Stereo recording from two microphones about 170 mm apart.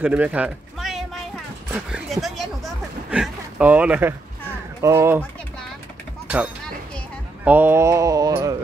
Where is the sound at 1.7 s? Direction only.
5° right (ahead or behind).